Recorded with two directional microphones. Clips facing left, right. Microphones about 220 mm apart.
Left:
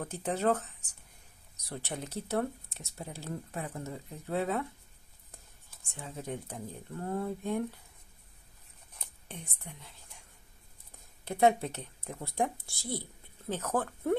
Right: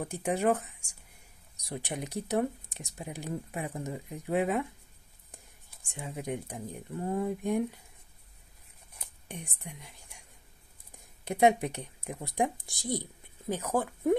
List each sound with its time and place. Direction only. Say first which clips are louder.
0.0 s speech: right 2 dB; 10° right (ahead or behind)
8.9 s whispering: right 3 dB; 10° right (ahead or behind)
11.2 s speech: right 2 dB; 15° right (ahead or behind)